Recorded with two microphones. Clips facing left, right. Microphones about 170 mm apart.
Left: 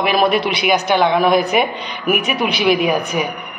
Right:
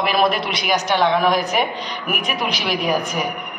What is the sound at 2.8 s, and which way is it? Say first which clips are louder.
Speech: left 3 dB; 65° left (ahead or behind).